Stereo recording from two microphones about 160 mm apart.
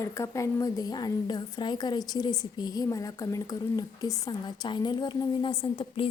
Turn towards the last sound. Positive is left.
turn(degrees=30)  # may be behind; listen again after turning